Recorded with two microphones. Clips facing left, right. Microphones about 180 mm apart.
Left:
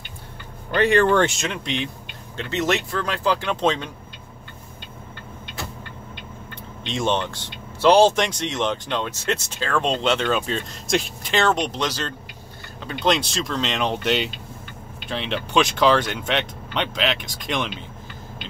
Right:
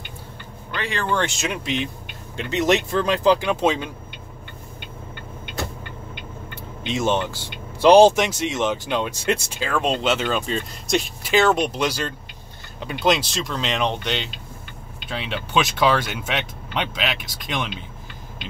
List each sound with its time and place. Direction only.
0.7 s speech: 40° left (ahead or behind)
1.4 s speech: 5° right (ahead or behind)
2.3 s speech: 15° right (ahead or behind)
6.5 s speech: 5° right (ahead or behind)